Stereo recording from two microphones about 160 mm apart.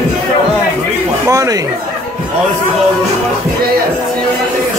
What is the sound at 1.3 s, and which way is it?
Speech, 20° right (ahead or behind).